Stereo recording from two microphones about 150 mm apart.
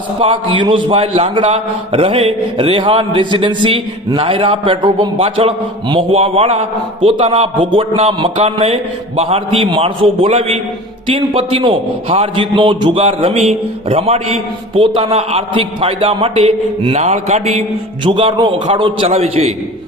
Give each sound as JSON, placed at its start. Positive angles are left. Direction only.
{"t": 0.2, "sound": "a man's voice", "side_deg": -35}
{"t": 18.0, "sound": "a man's voice", "side_deg": -35}